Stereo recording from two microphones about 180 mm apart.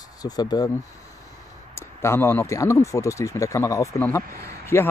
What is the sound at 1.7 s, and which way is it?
Speech, 15° left (ahead or behind).